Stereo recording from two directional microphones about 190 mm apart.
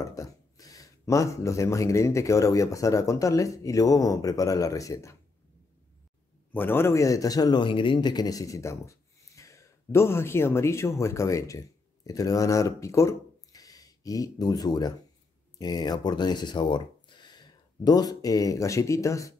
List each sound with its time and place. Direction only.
0.0 s speech: 15° left (ahead or behind)
6.5 s speech: 10° left (ahead or behind)